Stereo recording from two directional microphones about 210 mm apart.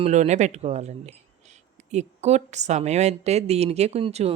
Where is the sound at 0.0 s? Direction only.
35° right (ahead or behind).